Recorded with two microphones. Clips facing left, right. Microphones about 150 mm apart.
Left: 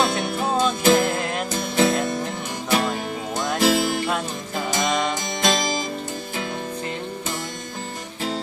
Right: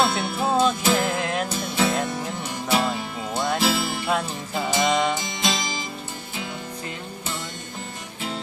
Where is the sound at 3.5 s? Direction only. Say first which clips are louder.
Left 4 dB; 45° left (ahead or behind).